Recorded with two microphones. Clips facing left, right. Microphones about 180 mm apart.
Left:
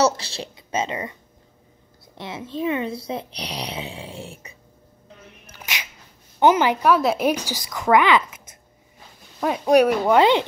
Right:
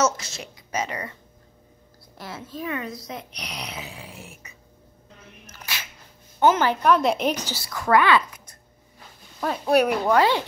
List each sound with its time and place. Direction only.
0.0 s a woman's voice: 30° left (ahead or behind)
2.1 s speech: 25° left (ahead or behind)
5.5 s a sound: 15° left (ahead or behind)
6.4 s a woman's voice: 15° left (ahead or behind)
9.4 s a woman's voice: 10° left (ahead or behind)
10.1 s speech: 20° left (ahead or behind)